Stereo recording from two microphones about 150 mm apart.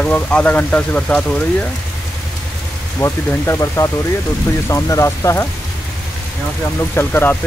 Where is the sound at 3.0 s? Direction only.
20° left (ahead or behind).